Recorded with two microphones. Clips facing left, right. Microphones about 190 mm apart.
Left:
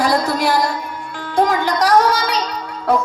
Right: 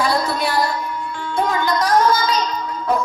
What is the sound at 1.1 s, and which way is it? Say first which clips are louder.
Music: left 5 dB; 70° left (ahead or behind).